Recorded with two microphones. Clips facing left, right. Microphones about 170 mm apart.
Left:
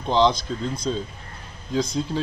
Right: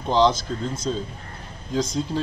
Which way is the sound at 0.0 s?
10° right (ahead or behind).